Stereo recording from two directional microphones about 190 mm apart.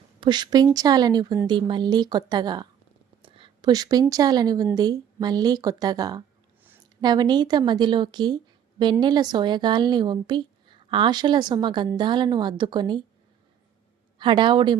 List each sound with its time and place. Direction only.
0.2 s a woman's voice: 25° right (ahead or behind)
3.2 s a sound: 25° right (ahead or behind)
4.1 s a woman's voice: 20° right (ahead or behind)
14.2 s a woman's voice: 25° right (ahead or behind)